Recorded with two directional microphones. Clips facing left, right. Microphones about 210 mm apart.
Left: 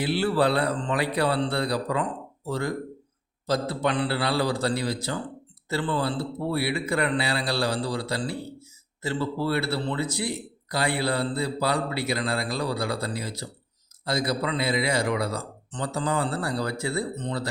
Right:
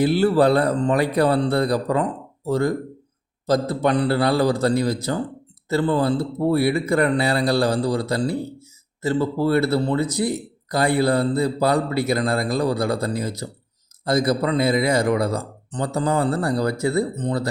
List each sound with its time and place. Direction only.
0.0 s speech: 45° right (ahead or behind)